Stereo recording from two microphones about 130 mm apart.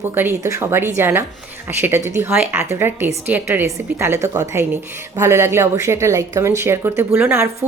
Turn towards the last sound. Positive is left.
turn(degrees=-20)  # may be behind; listen again after turning